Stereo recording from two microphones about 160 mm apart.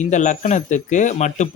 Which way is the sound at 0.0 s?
50° left (ahead or behind).